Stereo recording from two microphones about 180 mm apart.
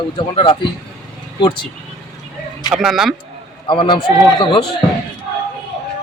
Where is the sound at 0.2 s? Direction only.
30° left (ahead or behind).